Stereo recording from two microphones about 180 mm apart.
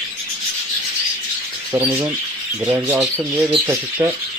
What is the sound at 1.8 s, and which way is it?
Speech, 20° right (ahead or behind).